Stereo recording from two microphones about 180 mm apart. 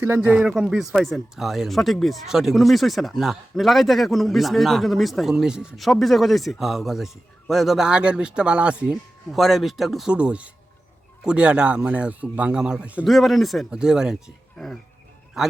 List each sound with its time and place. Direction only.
0.0 s speech: 10° right (ahead or behind)